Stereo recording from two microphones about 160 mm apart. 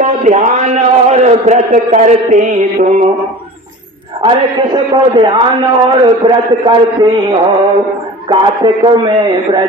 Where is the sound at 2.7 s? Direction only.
55° right (ahead or behind).